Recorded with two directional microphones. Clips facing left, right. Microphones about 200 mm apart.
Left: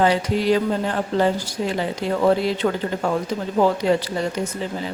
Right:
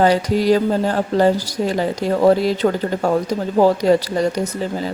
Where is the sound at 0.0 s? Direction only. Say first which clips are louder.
Right 4 dB; 40° right (ahead or behind).